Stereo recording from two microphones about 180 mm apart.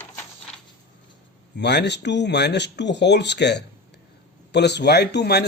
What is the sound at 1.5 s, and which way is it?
Speech, 70° left (ahead or behind).